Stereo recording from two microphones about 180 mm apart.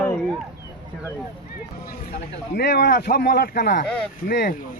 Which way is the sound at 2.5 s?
60° left (ahead or behind).